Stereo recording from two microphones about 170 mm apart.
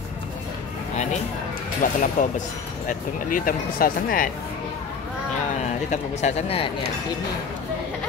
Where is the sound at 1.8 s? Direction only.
50° left (ahead or behind).